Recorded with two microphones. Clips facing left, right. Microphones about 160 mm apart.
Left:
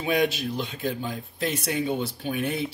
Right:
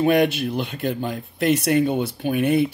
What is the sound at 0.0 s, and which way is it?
Speech, 60° right (ahead or behind).